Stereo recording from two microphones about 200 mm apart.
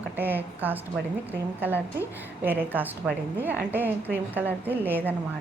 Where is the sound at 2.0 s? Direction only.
10° right (ahead or behind).